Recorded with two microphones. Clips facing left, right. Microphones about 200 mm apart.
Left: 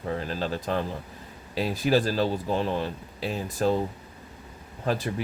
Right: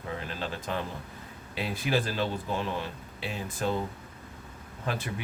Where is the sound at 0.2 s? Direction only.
35° left (ahead or behind).